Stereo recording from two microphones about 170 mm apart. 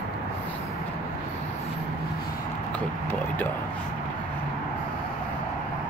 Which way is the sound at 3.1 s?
10° left (ahead or behind).